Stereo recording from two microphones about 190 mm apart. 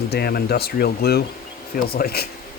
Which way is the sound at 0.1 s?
55° left (ahead or behind).